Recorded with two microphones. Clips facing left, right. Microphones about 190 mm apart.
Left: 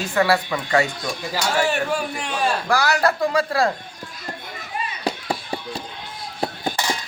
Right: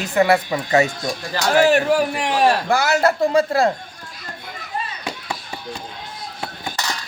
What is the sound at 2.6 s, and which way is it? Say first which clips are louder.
Speech: right 2 dB; 25° right (ahead or behind).